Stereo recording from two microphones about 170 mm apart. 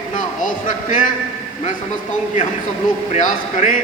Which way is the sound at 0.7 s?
50° left (ahead or behind).